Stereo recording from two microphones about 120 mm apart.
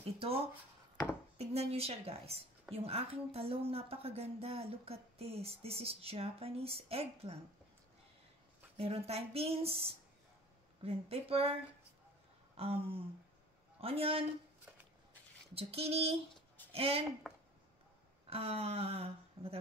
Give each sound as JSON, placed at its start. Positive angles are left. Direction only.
{"t": 0.0, "sound": "a woman's voice", "side_deg": -55}
{"t": 8.7, "sound": "a woman's voice", "side_deg": -55}
{"t": 15.5, "sound": "a woman's voice", "side_deg": -55}
{"t": 17.3, "sound": "a sound", "side_deg": 5}
{"t": 18.2, "sound": "speech", "side_deg": -55}